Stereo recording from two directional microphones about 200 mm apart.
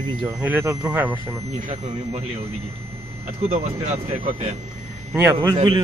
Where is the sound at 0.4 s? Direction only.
10° right (ahead or behind).